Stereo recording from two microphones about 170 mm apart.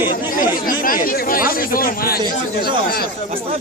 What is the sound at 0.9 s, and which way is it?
Speech, 55° left (ahead or behind).